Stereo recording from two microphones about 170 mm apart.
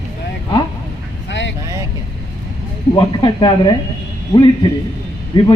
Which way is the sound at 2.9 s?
25° left (ahead or behind).